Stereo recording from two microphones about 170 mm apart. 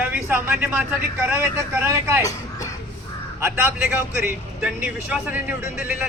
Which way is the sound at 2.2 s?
20° left (ahead or behind).